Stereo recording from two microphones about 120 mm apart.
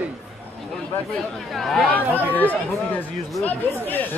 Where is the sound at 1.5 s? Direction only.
Centre (ahead or behind).